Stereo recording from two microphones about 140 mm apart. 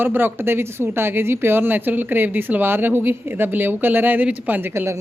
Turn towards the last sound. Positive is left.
turn(degrees=-20)  # may be behind; listen again after turning